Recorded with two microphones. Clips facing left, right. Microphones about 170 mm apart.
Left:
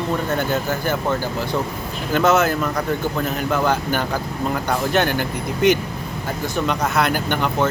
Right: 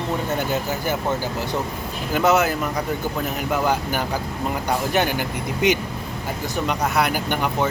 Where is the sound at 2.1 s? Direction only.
15° right (ahead or behind).